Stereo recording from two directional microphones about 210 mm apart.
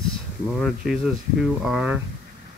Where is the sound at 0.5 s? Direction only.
Centre (ahead or behind).